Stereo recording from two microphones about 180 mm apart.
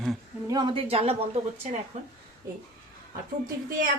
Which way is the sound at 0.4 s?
25° right (ahead or behind).